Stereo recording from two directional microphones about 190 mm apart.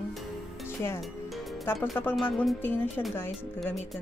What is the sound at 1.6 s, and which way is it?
Speech, 10° left (ahead or behind).